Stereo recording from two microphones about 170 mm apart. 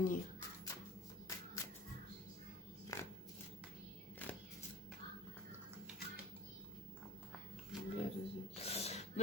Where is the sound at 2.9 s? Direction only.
20° left (ahead or behind).